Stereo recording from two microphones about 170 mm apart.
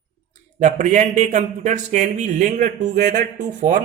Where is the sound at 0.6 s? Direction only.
45° right (ahead or behind).